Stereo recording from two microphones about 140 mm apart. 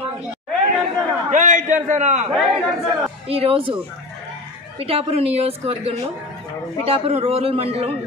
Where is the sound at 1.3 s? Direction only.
65° right (ahead or behind).